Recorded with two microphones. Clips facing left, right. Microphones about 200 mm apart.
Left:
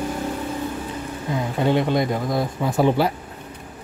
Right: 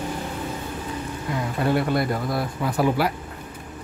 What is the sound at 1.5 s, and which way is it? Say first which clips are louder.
Speech: left 2 dB; 20° left (ahead or behind).